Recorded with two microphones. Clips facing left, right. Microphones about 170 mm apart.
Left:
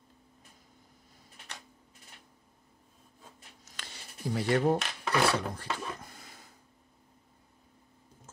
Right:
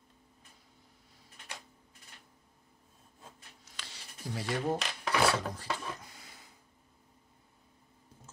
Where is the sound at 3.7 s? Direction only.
55° left (ahead or behind).